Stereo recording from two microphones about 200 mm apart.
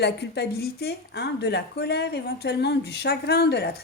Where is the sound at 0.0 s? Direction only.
55° left (ahead or behind).